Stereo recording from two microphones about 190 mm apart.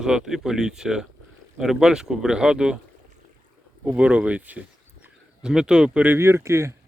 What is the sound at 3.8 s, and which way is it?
Speech, 5° right (ahead or behind).